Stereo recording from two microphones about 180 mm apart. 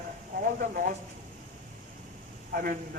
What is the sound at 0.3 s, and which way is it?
Speech, 55° right (ahead or behind).